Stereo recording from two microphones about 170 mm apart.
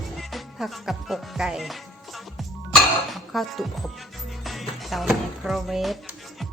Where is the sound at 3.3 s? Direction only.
Centre (ahead or behind).